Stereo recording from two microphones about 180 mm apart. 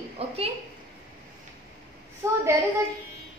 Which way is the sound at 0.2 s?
35° right (ahead or behind).